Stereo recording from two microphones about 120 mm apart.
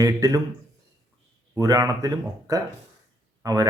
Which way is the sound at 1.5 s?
30° right (ahead or behind).